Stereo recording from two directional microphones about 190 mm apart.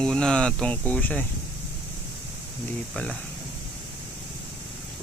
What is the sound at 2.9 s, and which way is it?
Speech, 5° left (ahead or behind).